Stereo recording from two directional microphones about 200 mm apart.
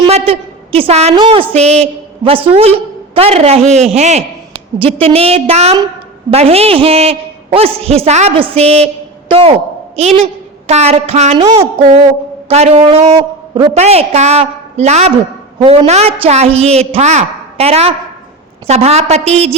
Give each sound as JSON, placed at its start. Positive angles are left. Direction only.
{"t": 0.1, "sound": "a woman's voice", "side_deg": -30}
{"t": 9.3, "sound": "a sound", "side_deg": -30}
{"t": 10.7, "sound": "a man's voice", "side_deg": -30}
{"t": 11.3, "sound": "a man's voice", "side_deg": -20}